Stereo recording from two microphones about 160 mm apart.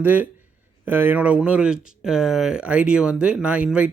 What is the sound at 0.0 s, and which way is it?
Speech, 10° right (ahead or behind).